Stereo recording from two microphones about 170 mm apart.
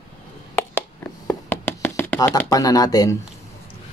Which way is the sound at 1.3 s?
10° left (ahead or behind).